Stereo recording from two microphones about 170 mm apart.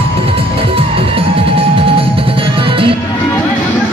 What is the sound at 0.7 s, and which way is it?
Music, 35° right (ahead or behind).